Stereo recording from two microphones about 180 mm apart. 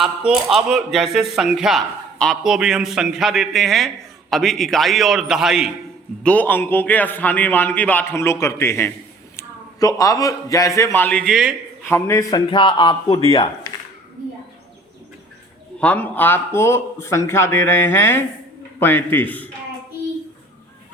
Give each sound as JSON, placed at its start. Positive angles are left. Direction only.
{"t": 0.0, "sound": "a man's voice", "side_deg": -5}
{"t": 6.2, "sound": "a man's voice", "side_deg": 10}
{"t": 11.9, "sound": "a man's voice", "side_deg": 15}
{"t": 15.8, "sound": "a man's voice", "side_deg": 10}